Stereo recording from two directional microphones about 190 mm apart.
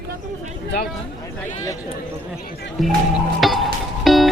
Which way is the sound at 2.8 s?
Centre (ahead or behind).